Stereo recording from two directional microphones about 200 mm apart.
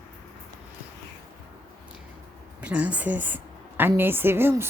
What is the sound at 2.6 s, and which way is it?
A woman's voice, 5° right (ahead or behind).